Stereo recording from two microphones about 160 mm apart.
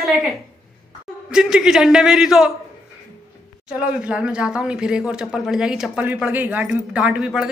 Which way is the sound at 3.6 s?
5° right (ahead or behind).